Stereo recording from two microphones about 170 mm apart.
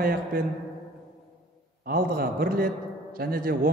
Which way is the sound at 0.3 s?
55° right (ahead or behind).